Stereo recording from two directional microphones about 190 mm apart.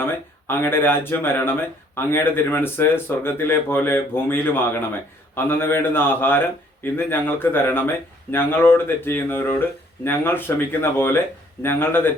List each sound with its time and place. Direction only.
0.0 s speech: 10° left (ahead or behind)